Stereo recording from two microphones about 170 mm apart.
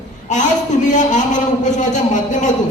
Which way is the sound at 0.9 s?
45° left (ahead or behind).